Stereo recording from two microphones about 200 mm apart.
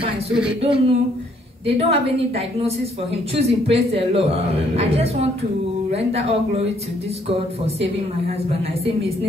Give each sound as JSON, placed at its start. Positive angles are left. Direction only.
{"t": 0.6, "sound": "a woman's voice", "side_deg": -25}